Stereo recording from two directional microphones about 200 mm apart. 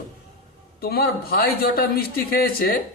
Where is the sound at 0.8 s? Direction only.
50° left (ahead or behind).